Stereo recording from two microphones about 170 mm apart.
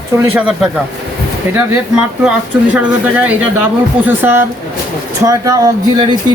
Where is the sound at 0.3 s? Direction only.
5° right (ahead or behind).